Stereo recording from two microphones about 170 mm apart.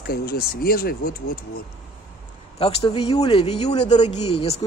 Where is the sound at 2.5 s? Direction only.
35° left (ahead or behind).